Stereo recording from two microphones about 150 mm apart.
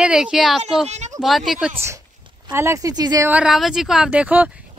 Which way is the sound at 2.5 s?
15° right (ahead or behind).